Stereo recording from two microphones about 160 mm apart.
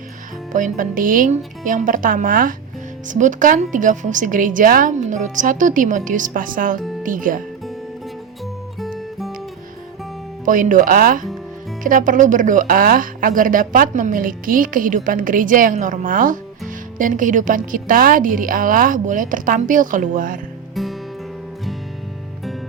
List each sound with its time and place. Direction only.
0.5 s a woman's voice: 55° right (ahead or behind)
8.8 s music: centre (ahead or behind)
10.4 s speech: 55° right (ahead or behind)
20.8 s music: centre (ahead or behind)